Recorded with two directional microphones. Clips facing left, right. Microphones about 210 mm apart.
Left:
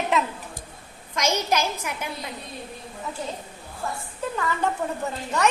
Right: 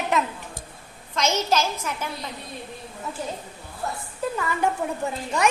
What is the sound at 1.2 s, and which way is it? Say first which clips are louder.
Speech: right 1 dB; 15° left (ahead or behind).